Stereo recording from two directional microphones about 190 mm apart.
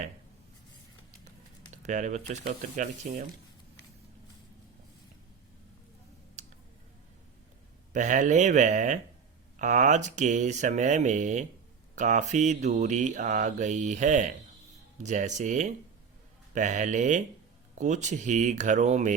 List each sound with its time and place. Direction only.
1.8 s mantra: 40° right (ahead or behind)
7.9 s mantra: 40° right (ahead or behind)